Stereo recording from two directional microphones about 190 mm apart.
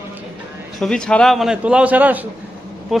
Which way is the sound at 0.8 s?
5° left (ahead or behind).